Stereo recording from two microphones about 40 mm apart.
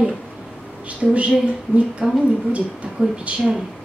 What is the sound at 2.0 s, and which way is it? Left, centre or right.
Speech, right.